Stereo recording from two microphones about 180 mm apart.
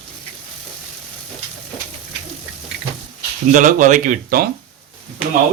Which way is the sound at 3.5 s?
45° right (ahead or behind).